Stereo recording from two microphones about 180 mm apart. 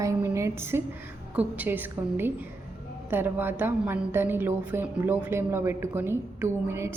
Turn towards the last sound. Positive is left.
turn(degrees=-15)  # may be behind; listen again after turning